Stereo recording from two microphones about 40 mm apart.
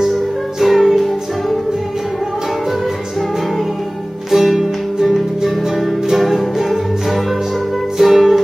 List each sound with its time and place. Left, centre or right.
0.6 s music: centre
4.3 s music: centre